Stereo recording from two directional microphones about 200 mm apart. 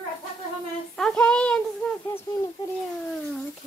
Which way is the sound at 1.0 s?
5° left (ahead or behind).